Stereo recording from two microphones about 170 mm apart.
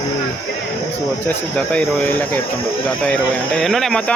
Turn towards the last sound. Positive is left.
turn(degrees=0)  # may be behind; listen again after turning